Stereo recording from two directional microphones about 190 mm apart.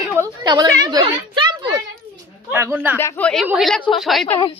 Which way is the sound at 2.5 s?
10° right (ahead or behind).